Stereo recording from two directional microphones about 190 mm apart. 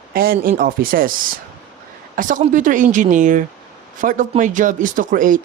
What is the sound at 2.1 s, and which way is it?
Speech, 45° right (ahead or behind).